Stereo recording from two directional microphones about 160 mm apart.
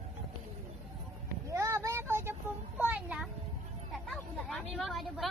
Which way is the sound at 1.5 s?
20° right (ahead or behind).